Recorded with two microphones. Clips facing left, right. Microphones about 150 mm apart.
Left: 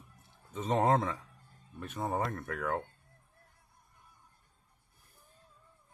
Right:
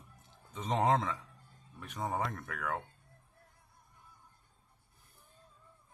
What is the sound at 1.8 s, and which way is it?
Speech, 10° right (ahead or behind).